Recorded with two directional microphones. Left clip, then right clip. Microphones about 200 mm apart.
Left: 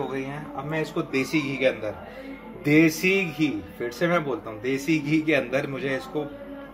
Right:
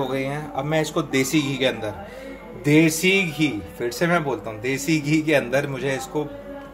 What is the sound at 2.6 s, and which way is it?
A man's voice, 20° right (ahead or behind).